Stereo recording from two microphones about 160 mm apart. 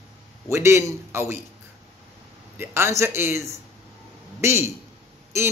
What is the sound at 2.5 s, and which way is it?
A man's voice, 15° right (ahead or behind).